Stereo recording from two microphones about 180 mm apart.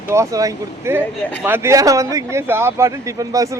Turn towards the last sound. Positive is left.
turn(degrees=-20)  # may be behind; listen again after turning